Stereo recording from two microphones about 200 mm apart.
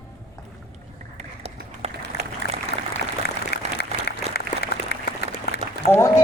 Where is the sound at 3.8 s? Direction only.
50° left (ahead or behind).